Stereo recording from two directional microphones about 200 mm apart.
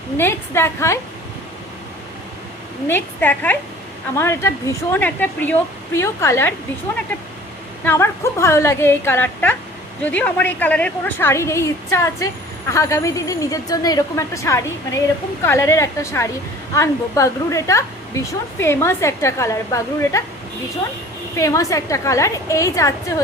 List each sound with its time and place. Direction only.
0.2 s a woman's voice: 10° left (ahead or behind)
2.8 s a woman's voice: 10° left (ahead or behind)
7.9 s a woman's voice: 15° left (ahead or behind)
21.3 s a woman's voice: 15° left (ahead or behind)